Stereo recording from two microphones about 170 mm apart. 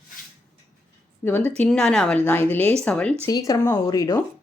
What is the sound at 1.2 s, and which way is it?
A woman's voice, 10° left (ahead or behind).